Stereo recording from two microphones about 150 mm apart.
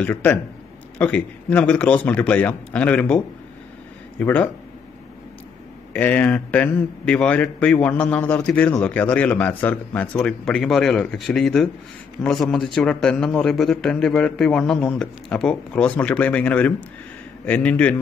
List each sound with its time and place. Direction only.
0.0 s speech: 10° left (ahead or behind)
4.2 s speech: 10° left (ahead or behind)
5.9 s a man's voice: 10° left (ahead or behind)